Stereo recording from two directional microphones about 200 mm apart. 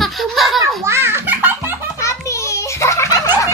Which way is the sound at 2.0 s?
15° left (ahead or behind).